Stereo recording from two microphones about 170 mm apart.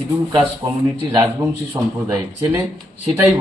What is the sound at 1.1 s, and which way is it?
Speech, 20° right (ahead or behind).